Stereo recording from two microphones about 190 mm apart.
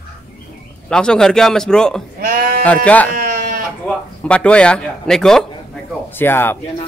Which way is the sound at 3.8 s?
5° left (ahead or behind).